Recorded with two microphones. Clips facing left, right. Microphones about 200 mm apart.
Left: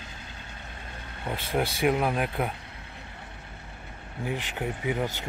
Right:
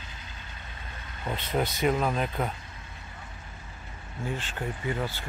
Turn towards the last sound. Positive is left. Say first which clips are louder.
# left 2 dB
turn(degrees=15)  # may be behind; listen again after turning